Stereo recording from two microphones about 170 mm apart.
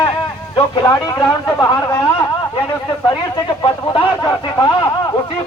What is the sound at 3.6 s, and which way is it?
Speech, 25° left (ahead or behind).